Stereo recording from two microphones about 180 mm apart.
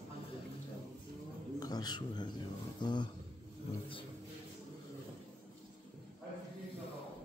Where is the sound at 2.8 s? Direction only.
25° left (ahead or behind).